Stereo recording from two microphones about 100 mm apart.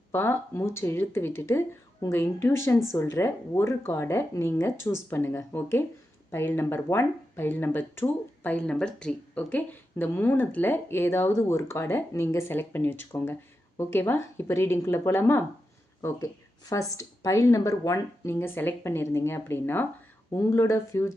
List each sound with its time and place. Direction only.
0.1 s speech: 25° left (ahead or behind)